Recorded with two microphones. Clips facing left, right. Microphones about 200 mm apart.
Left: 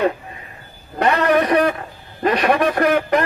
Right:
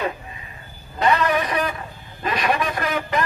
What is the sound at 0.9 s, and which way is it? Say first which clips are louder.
A man's voice: left 4 dB; 65° left (ahead or behind).